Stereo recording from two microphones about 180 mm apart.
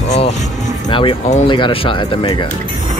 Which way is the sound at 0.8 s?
30° left (ahead or behind).